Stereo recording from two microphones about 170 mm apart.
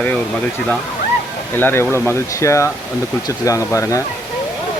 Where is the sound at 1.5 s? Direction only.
10° left (ahead or behind).